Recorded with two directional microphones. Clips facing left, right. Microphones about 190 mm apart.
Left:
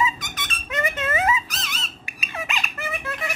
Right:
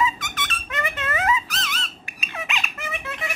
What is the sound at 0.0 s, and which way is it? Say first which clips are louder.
Squeak: right 1 dB; 15° left (ahead or behind).